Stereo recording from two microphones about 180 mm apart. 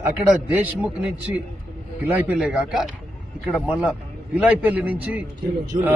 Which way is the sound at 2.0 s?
10° right (ahead or behind).